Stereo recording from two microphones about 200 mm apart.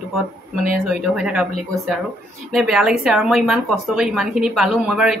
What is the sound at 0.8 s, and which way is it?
Speech, 5° right (ahead or behind).